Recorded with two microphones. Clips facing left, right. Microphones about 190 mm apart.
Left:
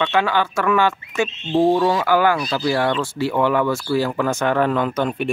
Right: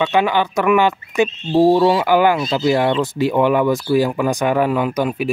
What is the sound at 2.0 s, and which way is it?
Speech, 15° right (ahead or behind).